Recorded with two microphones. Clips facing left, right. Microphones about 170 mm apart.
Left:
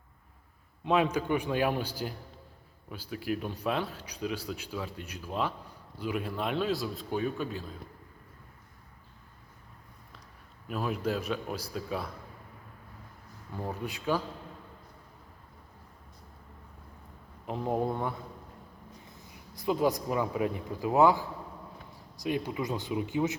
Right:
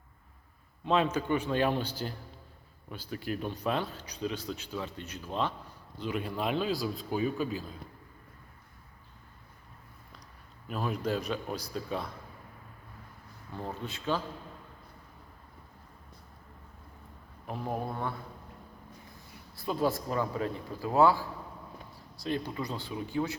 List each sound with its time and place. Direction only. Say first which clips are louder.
0.9 s a man's voice: left 1 dB; 10° left (ahead or behind)
10.7 s a man's voice: left 1 dB; 5° left (ahead or behind)
13.5 s a man's voice: left 2 dB; 10° left (ahead or behind)
17.4 s speech: left 5 dB; 20° left (ahead or behind)
19.3 s a man's voice: left 4 dB; 15° left (ahead or behind)